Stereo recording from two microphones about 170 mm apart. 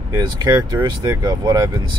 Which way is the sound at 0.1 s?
25° right (ahead or behind).